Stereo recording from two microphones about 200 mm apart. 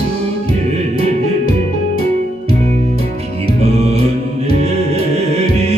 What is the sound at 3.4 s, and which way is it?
Music, 30° right (ahead or behind).